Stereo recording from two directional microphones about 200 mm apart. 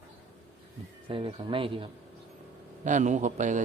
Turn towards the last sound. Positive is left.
turn(degrees=-35)  # may be behind; listen again after turning